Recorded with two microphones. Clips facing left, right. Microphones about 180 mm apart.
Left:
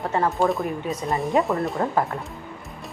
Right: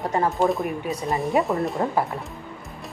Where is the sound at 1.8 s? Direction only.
25° right (ahead or behind).